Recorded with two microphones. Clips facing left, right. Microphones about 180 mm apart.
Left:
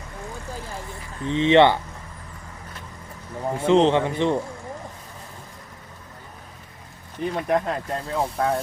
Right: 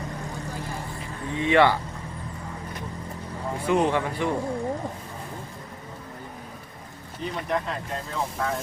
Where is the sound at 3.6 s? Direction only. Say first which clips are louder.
Left 5 dB; 25° left (ahead or behind).